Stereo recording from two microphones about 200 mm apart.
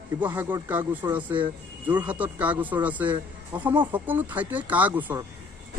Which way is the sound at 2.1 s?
5° right (ahead or behind).